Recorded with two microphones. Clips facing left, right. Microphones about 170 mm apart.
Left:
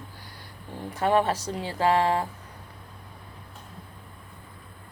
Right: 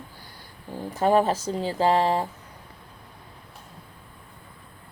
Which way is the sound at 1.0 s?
35° right (ahead or behind).